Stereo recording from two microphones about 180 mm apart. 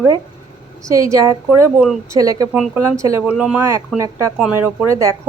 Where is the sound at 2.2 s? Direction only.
20° right (ahead or behind).